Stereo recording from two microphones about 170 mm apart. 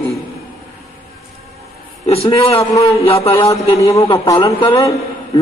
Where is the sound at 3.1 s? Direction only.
35° left (ahead or behind).